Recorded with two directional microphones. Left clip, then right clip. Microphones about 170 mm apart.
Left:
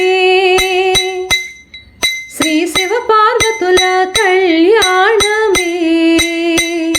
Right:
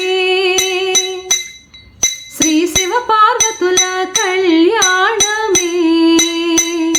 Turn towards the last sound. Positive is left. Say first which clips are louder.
# left 1 dB
turn(degrees=15)  # may be behind; listen again after turning